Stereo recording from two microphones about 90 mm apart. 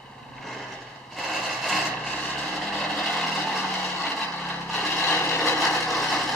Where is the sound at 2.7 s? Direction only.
10° left (ahead or behind).